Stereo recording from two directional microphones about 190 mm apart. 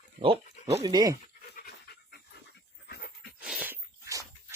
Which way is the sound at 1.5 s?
55° left (ahead or behind).